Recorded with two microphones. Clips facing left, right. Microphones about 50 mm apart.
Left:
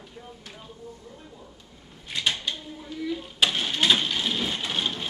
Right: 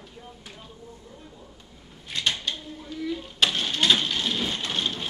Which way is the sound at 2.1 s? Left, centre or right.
Centre.